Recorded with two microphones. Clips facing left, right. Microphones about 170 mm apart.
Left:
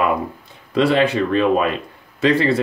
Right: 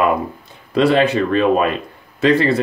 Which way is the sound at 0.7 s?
45° right (ahead or behind).